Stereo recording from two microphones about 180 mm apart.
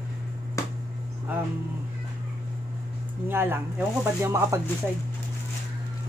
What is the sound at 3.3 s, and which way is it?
A woman's voice, 10° right (ahead or behind).